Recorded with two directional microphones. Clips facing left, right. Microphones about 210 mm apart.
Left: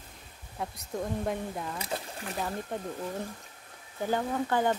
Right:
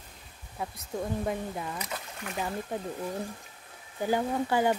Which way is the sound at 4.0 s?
10° right (ahead or behind).